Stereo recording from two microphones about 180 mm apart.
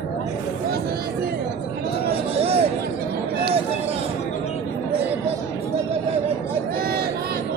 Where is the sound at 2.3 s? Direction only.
35° right (ahead or behind).